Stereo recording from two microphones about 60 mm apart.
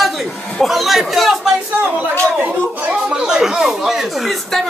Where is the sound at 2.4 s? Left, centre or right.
Centre.